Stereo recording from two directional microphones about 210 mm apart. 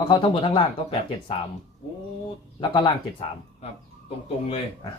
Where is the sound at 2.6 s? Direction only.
25° left (ahead or behind).